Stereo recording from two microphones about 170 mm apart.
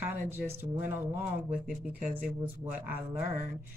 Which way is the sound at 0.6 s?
10° right (ahead or behind).